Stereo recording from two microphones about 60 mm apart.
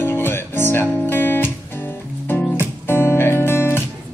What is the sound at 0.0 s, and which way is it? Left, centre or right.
Music, left.